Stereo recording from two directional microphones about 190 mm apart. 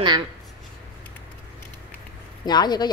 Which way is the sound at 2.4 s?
20° left (ahead or behind).